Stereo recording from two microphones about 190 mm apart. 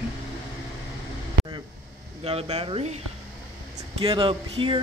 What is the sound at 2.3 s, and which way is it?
Speech, 30° right (ahead or behind).